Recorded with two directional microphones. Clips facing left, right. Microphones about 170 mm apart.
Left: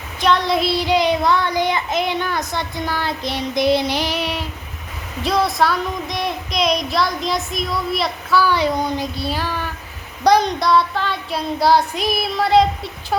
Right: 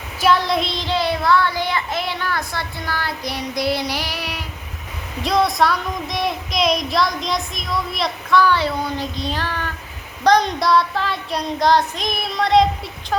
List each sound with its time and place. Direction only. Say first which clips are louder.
0.2 s child singing: even; 5° right (ahead or behind); by 4.4 s 25° left (ahead or behind)
5.2 s child singing: even; centre (ahead or behind)